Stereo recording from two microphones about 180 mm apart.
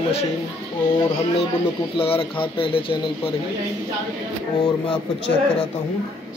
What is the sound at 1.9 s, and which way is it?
Speech, 30° left (ahead or behind).